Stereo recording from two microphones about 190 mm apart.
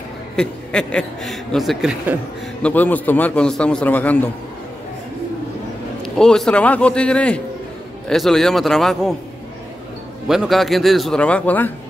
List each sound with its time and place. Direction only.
0.4 s speech: 5° left (ahead or behind)
2.6 s a man's voice: 10° left (ahead or behind)
6.0 s speech: 5° left (ahead or behind)
10.2 s speech: centre (ahead or behind)